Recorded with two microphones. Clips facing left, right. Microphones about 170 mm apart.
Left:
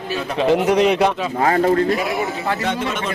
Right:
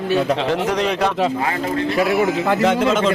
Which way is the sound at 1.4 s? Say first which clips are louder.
Left 5 dB; 40° left (ahead or behind).